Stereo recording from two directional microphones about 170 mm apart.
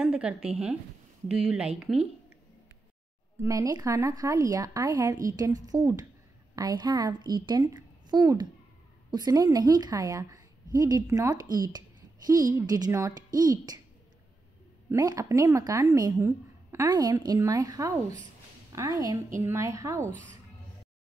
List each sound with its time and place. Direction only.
0.0 s speech: 5° right (ahead or behind)
3.4 s a woman's voice: 20° right (ahead or behind)
14.9 s a woman's voice: 20° right (ahead or behind)